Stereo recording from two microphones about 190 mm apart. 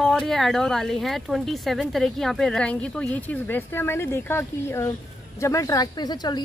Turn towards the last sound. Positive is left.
turn(degrees=20)  # may be behind; listen again after turning